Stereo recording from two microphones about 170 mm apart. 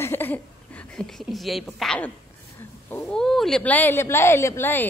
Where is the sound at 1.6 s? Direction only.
5° left (ahead or behind).